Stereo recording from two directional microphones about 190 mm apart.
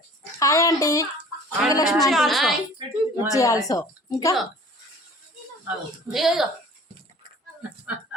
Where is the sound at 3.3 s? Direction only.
15° left (ahead or behind).